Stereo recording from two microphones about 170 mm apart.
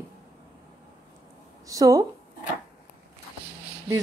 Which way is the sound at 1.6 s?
20° right (ahead or behind).